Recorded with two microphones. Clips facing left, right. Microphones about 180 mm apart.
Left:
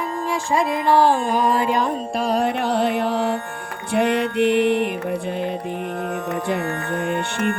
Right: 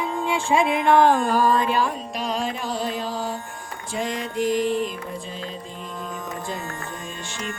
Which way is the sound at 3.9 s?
65° left (ahead or behind).